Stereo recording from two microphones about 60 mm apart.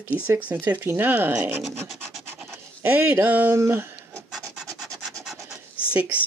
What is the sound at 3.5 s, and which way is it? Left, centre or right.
Speech, right.